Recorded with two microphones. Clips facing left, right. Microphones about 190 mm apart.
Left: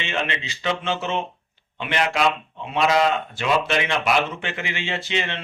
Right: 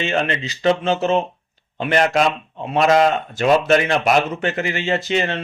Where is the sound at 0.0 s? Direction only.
40° right (ahead or behind).